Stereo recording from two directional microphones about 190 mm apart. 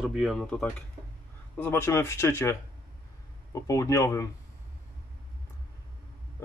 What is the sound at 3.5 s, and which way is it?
Speech, 15° left (ahead or behind).